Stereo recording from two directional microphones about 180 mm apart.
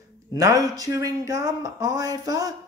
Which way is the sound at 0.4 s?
20° right (ahead or behind).